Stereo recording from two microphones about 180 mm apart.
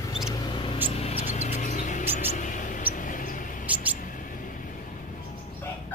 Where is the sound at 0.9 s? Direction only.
35° left (ahead or behind).